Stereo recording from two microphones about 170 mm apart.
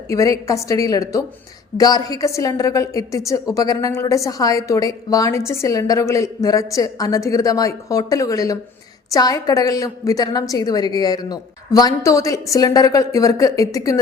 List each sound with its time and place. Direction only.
0.1 s a woman's voice: 20° left (ahead or behind)